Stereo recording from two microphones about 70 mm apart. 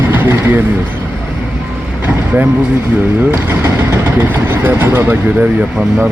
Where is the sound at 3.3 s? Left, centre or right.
Right.